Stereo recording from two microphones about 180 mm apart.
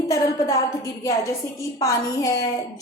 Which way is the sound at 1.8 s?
20° left (ahead or behind).